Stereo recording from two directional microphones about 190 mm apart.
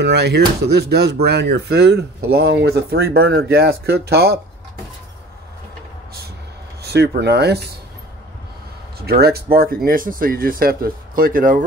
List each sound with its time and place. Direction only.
0.0 s speech: 60° right (ahead or behind)
3.3 s speech: 90° right
3.5 s speech: 55° right (ahead or behind)
6.8 s speech: 60° right (ahead or behind)
9.0 s speech: 55° right (ahead or behind)